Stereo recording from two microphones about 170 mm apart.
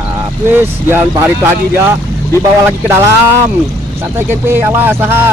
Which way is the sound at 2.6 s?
15° right (ahead or behind).